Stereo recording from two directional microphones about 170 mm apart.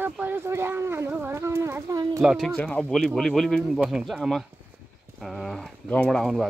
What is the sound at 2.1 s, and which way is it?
Speech, centre (ahead or behind).